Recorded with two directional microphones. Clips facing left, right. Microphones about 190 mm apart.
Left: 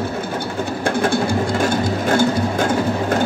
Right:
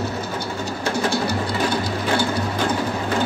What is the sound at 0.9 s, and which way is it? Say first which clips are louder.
Sewing machine: left 3 dB; 55° left (ahead or behind).